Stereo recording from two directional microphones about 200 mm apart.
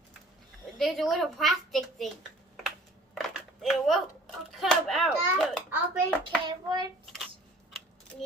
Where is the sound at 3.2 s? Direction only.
Centre (ahead or behind).